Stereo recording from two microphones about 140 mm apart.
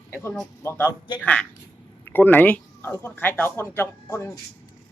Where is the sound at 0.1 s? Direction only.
15° left (ahead or behind).